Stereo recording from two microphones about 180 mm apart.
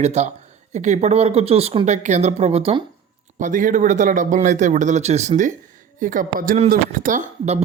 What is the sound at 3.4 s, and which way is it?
Speech, 45° right (ahead or behind).